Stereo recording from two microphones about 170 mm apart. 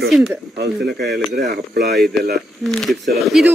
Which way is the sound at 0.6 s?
70° right (ahead or behind).